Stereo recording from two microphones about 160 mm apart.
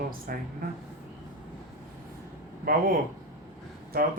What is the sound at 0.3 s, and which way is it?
Speech, 65° right (ahead or behind).